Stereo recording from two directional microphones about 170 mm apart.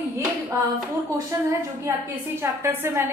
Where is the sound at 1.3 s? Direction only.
20° right (ahead or behind).